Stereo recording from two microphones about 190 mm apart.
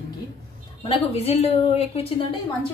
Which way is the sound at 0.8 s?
30° left (ahead or behind).